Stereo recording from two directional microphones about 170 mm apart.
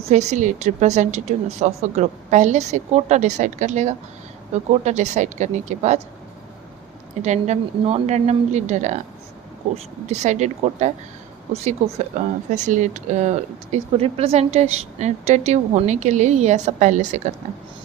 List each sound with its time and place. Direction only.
0.0 s speech: 40° right (ahead or behind)
7.2 s speech: 40° right (ahead or behind)